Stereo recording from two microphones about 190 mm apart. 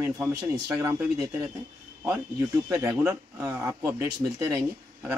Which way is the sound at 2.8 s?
15° right (ahead or behind).